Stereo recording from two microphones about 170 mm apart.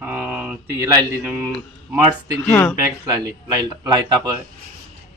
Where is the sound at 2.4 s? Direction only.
15° left (ahead or behind).